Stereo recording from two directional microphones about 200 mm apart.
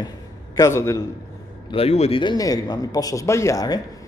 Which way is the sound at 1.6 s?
30° left (ahead or behind).